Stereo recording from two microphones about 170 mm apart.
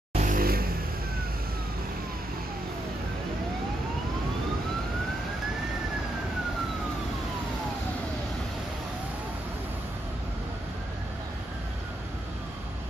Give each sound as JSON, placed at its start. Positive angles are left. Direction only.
{"t": 0.1, "sound": "vehicle", "side_deg": -50}